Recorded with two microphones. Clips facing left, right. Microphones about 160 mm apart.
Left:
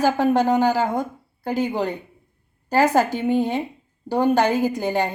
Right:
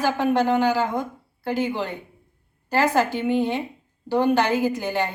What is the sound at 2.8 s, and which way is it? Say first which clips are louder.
Speech: left 3 dB; 45° left (ahead or behind).